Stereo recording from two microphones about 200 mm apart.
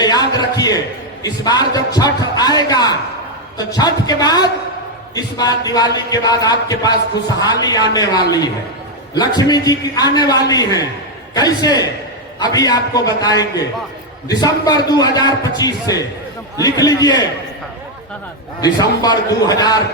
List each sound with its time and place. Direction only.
0.0 s a sound: 20° left (ahead or behind)
1.2 s speech: 20° left (ahead or behind)
18.6 s speech: 20° left (ahead or behind)